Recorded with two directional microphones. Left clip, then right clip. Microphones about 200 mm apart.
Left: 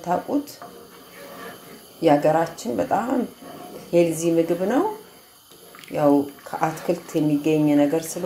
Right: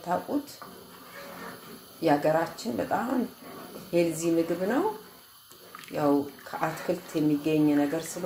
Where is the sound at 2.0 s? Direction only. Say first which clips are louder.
Left 6 dB; 15° left (ahead or behind).